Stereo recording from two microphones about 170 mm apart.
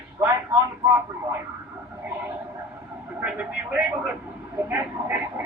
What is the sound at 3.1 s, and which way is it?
Speech, 10° right (ahead or behind).